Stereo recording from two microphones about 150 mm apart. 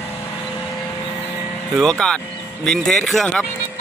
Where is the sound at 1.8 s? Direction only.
5° left (ahead or behind).